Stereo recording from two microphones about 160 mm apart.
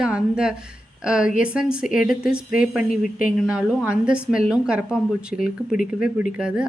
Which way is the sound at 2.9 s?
60° left (ahead or behind).